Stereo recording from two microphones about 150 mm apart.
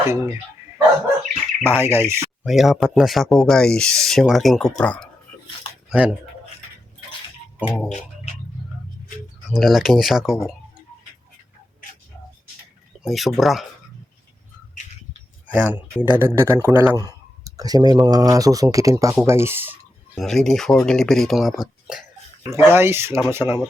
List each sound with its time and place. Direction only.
0.0 s speech: 15° right (ahead or behind)
1.6 s speech: 15° right (ahead or behind)
2.4 s speech: centre (ahead or behind)
5.9 s speech: 10° right (ahead or behind)
7.9 s speech: 50° left (ahead or behind)
9.5 s speech: centre (ahead or behind)
13.0 s speech: centre (ahead or behind)
15.4 s speech: 10° right (ahead or behind)
17.1 s speech: 25° right (ahead or behind)
20.1 s speech: 5° left (ahead or behind)
22.5 s speech: 15° right (ahead or behind)